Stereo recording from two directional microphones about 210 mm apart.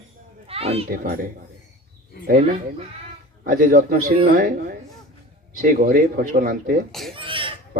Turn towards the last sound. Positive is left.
turn(degrees=-25)  # may be behind; listen again after turning